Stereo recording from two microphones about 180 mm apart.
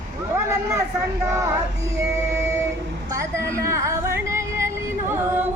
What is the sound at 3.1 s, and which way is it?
Music, 15° right (ahead or behind).